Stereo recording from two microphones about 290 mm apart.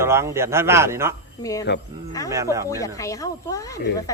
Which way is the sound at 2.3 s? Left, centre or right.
Centre.